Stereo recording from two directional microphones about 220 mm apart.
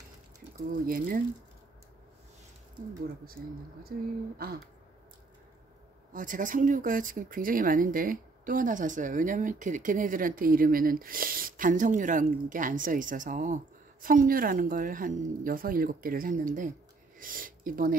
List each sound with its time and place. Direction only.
0.8 s speech: 40° right (ahead or behind)
3.9 s speech: 45° right (ahead or behind)
6.1 s speech: 35° right (ahead or behind)